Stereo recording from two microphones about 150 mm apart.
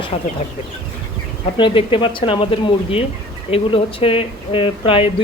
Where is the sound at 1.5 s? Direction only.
35° left (ahead or behind).